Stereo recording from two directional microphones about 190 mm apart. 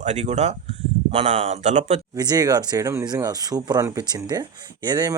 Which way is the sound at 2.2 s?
20° right (ahead or behind).